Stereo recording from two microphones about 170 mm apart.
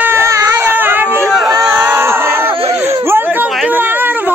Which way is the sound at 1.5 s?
20° right (ahead or behind).